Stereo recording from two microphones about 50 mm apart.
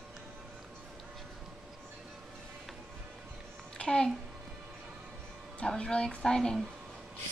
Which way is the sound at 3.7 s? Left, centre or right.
Centre.